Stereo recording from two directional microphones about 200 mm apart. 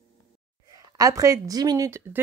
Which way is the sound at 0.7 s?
15° right (ahead or behind).